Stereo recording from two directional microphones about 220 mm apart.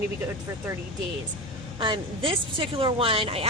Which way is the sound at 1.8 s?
20° right (ahead or behind).